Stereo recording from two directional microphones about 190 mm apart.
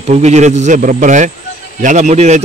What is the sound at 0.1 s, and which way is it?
Speech, 35° right (ahead or behind).